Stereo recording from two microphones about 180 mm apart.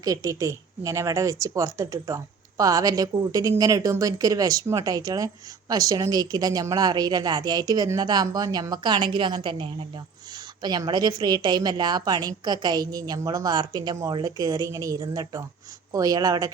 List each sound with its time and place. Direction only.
0.0 s speech: 20° right (ahead or behind)